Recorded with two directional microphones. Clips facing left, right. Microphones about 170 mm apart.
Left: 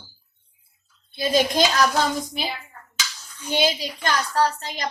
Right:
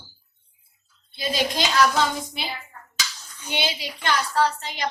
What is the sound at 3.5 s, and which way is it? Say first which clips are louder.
A woman's voice: left 6 dB; 40° left (ahead or behind).